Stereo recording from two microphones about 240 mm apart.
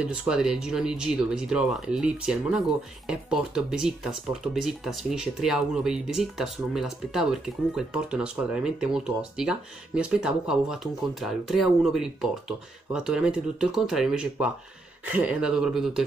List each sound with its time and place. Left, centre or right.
0.0 s speech: centre